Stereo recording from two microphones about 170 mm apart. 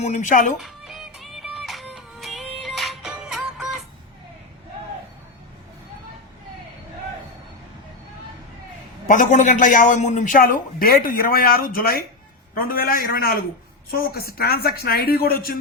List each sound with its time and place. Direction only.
0.0 s a man's voice: 45° left (ahead or behind)
0.6 s music: centre (ahead or behind)
9.0 s a man's voice: 50° left (ahead or behind); by 15.5 s 65° left (ahead or behind)